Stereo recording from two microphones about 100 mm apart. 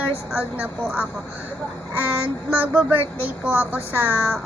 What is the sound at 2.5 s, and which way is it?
A woman's voice, 15° right (ahead or behind).